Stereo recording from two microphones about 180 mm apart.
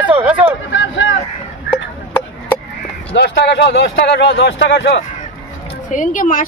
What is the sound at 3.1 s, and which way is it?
Speech, 80° left.